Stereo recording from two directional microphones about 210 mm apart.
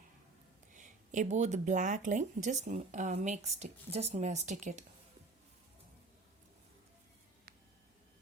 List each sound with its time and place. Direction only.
0.7 s speech: 35° right (ahead or behind)